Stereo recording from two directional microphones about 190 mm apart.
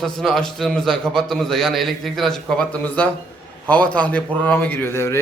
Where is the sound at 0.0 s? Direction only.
Centre (ahead or behind).